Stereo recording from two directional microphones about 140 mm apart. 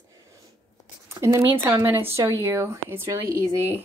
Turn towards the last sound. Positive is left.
turn(degrees=-20)  # may be behind; listen again after turning